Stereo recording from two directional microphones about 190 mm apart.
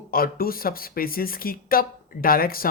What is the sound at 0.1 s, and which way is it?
Speech, 50° left (ahead or behind).